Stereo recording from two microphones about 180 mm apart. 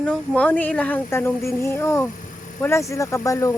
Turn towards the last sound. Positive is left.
turn(degrees=15)  # may be behind; listen again after turning